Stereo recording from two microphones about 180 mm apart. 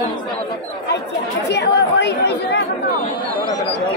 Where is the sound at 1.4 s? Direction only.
70° left (ahead or behind).